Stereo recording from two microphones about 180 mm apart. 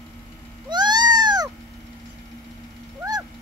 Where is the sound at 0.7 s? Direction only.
25° right (ahead or behind).